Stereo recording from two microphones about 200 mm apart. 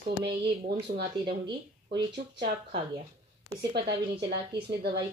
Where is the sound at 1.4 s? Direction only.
25° right (ahead or behind).